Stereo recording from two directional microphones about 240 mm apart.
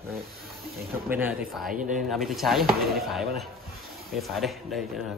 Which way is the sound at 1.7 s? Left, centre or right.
Right.